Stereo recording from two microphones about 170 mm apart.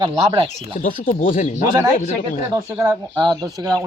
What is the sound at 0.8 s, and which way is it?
Speech, 50° left (ahead or behind).